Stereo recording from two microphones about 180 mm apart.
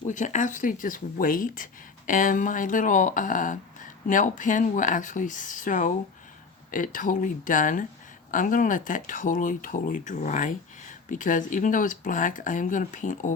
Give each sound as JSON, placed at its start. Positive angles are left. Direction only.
{"t": 0.1, "sound": "speech", "side_deg": 45}